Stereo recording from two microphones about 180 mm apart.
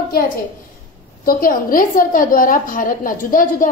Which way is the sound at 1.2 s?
50° left (ahead or behind).